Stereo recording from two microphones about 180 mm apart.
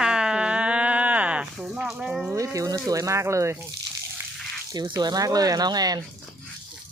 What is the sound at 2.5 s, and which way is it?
Speech, 20° right (ahead or behind).